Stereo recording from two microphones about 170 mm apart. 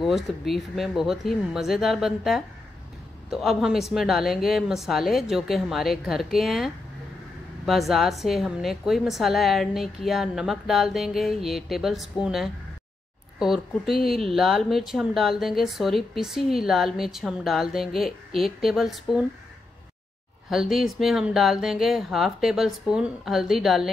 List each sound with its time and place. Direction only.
0.0 s speech: centre (ahead or behind)
20.4 s speech: centre (ahead or behind)